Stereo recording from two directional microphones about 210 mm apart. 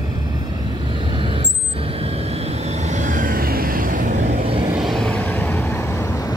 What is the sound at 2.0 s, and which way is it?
Vehicle, 30° right (ahead or behind).